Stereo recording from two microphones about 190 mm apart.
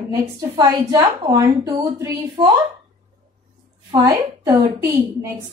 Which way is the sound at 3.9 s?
20° right (ahead or behind).